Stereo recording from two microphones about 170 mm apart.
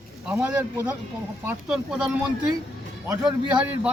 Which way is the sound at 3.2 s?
5° right (ahead or behind).